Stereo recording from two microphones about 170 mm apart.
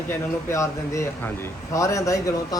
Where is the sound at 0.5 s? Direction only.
15° left (ahead or behind).